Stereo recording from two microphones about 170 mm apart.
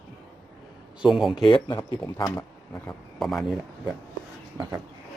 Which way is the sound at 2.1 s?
15° left (ahead or behind).